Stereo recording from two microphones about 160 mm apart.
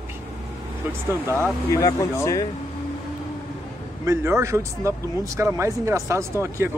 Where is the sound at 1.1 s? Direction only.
15° right (ahead or behind).